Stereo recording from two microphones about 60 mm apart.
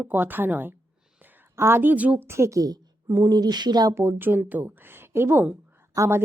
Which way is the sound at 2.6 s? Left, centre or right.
Right.